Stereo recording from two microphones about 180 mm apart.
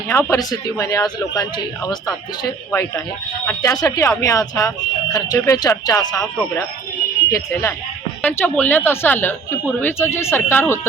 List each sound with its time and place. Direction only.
0.1 s speech: 15° left (ahead or behind)
7.3 s speech: 15° left (ahead or behind)